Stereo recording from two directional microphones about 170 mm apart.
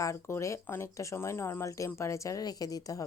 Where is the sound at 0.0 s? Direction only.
15° left (ahead or behind).